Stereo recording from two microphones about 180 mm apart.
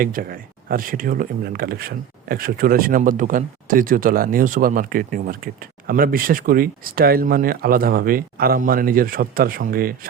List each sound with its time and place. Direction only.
0.0 s speech: 55° right (ahead or behind)